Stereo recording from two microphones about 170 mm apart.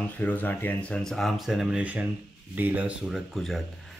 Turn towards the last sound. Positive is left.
turn(degrees=0)  # may be behind; listen again after turning